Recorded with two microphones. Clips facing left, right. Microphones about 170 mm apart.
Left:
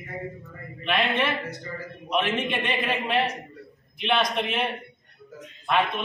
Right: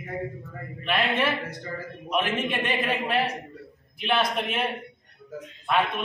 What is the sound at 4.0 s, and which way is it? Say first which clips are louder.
A man's voice: left 1 dB; 5° right (ahead or behind).